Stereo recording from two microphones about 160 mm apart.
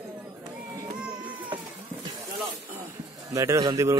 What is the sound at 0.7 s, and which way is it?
Baby cry, 10° right (ahead or behind).